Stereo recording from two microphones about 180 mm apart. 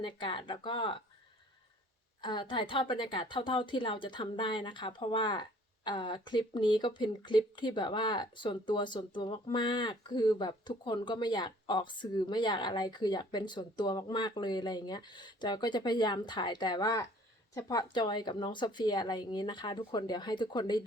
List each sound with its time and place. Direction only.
0.0 s a woman's voice: 25° left (ahead or behind)
2.2 s a woman's voice: 25° left (ahead or behind)